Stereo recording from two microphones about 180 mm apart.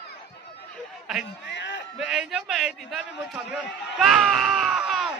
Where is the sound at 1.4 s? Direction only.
80° left.